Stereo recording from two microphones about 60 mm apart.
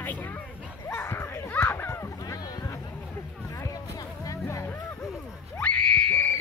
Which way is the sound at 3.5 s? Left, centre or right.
Left.